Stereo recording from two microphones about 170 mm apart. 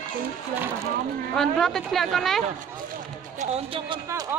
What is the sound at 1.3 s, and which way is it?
Speech, 5° left (ahead or behind).